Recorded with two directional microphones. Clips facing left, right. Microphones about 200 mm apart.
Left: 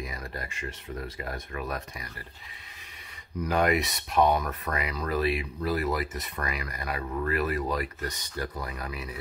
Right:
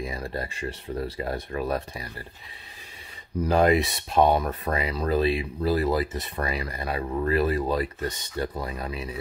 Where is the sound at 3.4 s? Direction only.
30° right (ahead or behind).